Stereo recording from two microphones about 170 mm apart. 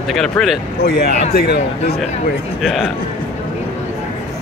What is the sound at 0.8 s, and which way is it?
Speech, 70° left (ahead or behind).